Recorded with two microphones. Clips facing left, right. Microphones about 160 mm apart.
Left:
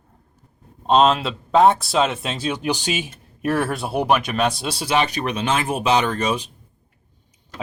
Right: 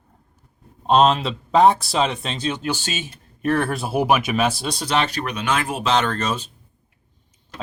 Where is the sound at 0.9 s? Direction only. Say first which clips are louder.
Even; centre (ahead or behind).